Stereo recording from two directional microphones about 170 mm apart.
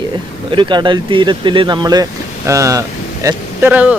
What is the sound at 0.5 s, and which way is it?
Speech, 30° right (ahead or behind).